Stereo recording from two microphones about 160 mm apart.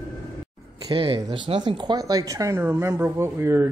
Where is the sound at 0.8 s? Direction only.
30° right (ahead or behind).